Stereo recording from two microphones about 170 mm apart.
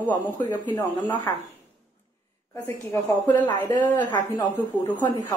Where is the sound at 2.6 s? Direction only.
15° left (ahead or behind).